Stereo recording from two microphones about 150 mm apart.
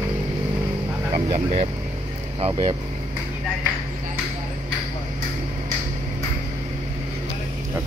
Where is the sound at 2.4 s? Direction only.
35° right (ahead or behind).